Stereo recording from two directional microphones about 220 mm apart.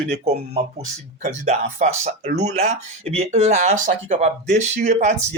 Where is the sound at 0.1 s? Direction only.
30° right (ahead or behind).